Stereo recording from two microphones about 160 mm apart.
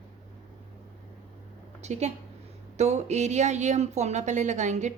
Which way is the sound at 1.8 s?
45° right (ahead or behind).